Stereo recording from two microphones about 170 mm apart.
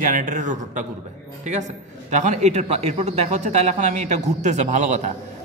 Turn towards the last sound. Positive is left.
turn(degrees=-45)  # may be behind; listen again after turning